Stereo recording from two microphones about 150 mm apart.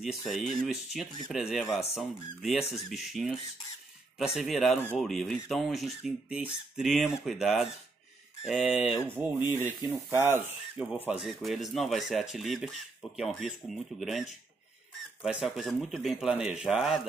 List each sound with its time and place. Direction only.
0.3 s speech: centre (ahead or behind)
9.1 s speech: 15° right (ahead or behind)
11.1 s speech: centre (ahead or behind)